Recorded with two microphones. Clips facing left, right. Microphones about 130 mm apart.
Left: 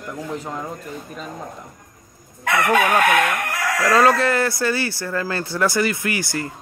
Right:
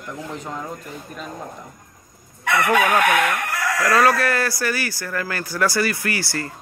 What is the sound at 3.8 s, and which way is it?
Speech, 20° left (ahead or behind).